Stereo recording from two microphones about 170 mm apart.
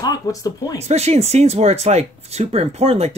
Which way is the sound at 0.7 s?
40° right (ahead or behind).